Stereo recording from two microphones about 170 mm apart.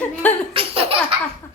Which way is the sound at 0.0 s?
10° left (ahead or behind).